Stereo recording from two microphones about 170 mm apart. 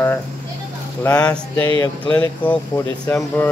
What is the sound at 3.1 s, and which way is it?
Speech, 10° left (ahead or behind).